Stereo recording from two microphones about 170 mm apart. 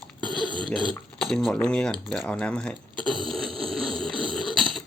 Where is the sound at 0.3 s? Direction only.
25° left (ahead or behind).